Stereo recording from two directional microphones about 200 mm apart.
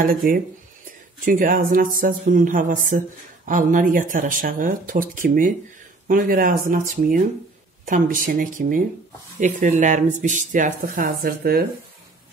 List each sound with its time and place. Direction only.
0.0 s speech: 45° right (ahead or behind)